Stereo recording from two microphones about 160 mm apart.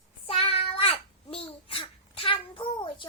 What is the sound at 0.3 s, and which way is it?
Child singing, 35° left (ahead or behind).